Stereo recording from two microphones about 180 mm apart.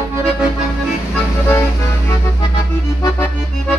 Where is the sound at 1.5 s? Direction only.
15° left (ahead or behind).